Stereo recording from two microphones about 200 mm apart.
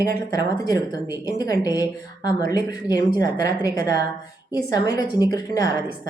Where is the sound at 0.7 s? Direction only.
15° left (ahead or behind).